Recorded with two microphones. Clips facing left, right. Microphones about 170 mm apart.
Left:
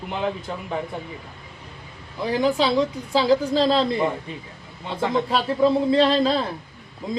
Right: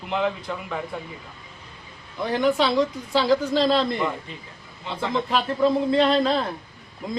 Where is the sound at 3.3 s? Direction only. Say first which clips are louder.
Left 1 dB; 35° left (ahead or behind).